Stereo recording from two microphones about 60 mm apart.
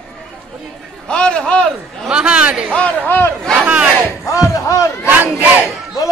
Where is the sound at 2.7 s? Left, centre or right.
Left.